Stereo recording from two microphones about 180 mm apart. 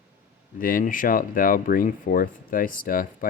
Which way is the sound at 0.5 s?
50° left (ahead or behind).